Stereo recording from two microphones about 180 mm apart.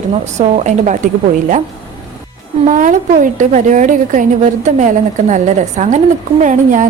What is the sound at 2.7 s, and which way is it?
A woman's voice, 45° right (ahead or behind).